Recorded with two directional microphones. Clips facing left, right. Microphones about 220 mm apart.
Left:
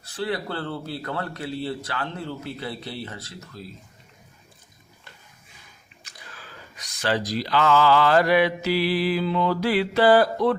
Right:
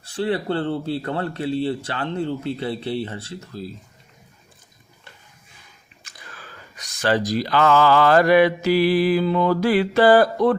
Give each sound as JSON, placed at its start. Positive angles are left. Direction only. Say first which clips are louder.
{"t": 0.0, "sound": "a man's voice", "louder": "right 5 dB", "side_deg": -30}
{"t": 6.0, "sound": "a sound", "louder": "right 1 dB", "side_deg": -50}
{"t": 7.0, "sound": "mantra", "louder": "right 4 dB", "side_deg": -50}